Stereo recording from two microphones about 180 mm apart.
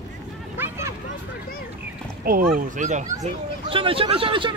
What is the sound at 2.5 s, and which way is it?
Speech, 45° right (ahead or behind).